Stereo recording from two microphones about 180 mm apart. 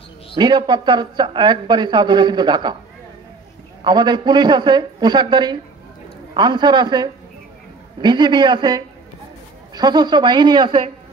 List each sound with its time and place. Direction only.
0.4 s speech: 25° right (ahead or behind)
3.8 s speech: 25° right (ahead or behind)